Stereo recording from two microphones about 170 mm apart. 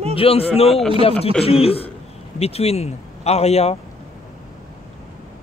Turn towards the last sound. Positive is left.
turn(degrees=40)  # may be behind; listen again after turning